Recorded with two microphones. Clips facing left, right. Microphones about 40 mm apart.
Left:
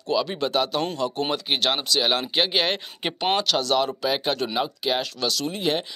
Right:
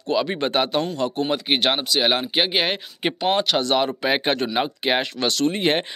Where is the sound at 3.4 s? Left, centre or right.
Right.